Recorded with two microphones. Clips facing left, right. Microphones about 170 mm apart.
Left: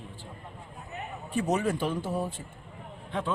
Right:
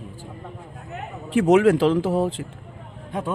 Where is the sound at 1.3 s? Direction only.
90° right.